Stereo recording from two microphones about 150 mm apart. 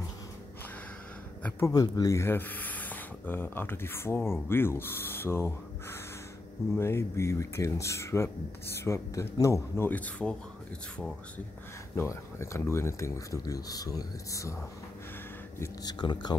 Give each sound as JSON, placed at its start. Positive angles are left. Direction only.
{"t": 1.7, "sound": "speech", "side_deg": 25}
{"t": 12.0, "sound": "speech", "side_deg": 15}
{"t": 15.6, "sound": "speech", "side_deg": 25}